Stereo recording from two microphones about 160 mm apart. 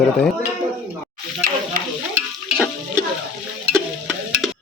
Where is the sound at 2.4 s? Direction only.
Centre (ahead or behind).